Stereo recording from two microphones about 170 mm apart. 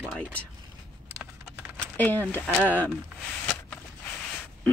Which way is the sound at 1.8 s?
10° left (ahead or behind).